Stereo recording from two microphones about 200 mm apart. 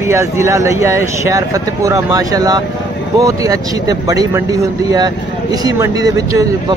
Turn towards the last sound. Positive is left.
turn(degrees=-20)  # may be behind; listen again after turning